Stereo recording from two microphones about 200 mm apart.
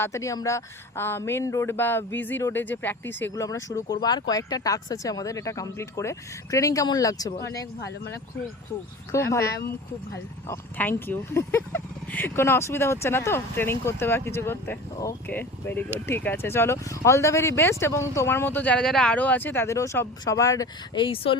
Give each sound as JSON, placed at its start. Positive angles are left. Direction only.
{"t": 0.0, "sound": "speech", "side_deg": 15}
{"t": 9.1, "sound": "speech", "side_deg": 15}
{"t": 10.5, "sound": "speech", "side_deg": 10}